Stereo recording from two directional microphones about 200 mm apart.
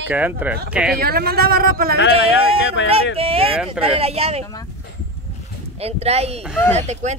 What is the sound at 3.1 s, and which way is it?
Speech, 30° right (ahead or behind).